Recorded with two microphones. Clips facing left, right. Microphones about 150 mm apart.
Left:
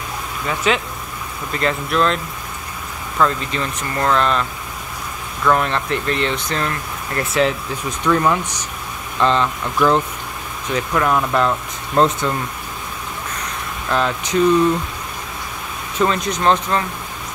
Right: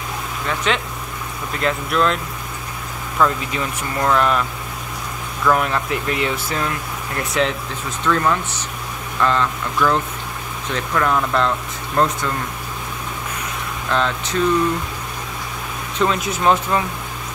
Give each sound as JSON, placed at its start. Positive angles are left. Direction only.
{"t": 0.7, "sound": "speech", "side_deg": 5}
{"t": 3.2, "sound": "speech", "side_deg": -10}
{"t": 8.0, "sound": "speech", "side_deg": 15}
{"t": 12.0, "sound": "speech", "side_deg": 25}
{"t": 13.8, "sound": "speech", "side_deg": 10}
{"t": 16.0, "sound": "speech", "side_deg": 0}